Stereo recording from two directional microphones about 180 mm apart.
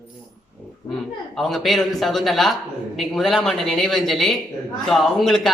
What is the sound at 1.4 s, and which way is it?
Speech, centre (ahead or behind).